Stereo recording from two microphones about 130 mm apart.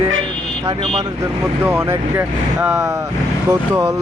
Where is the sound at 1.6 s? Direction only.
20° right (ahead or behind).